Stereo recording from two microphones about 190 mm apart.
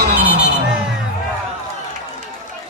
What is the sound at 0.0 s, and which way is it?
Vehicle, 60° right (ahead or behind).